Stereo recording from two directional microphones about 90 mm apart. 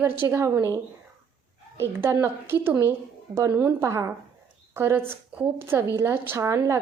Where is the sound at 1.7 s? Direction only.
30° right (ahead or behind).